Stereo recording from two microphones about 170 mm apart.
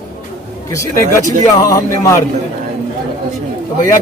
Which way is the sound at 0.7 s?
20° left (ahead or behind).